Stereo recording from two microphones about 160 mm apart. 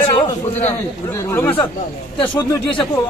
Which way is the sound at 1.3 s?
10° left (ahead or behind).